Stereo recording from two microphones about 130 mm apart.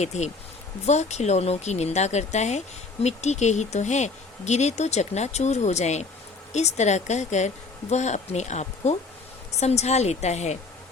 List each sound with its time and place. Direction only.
0.0 s speech: 60° left (ahead or behind)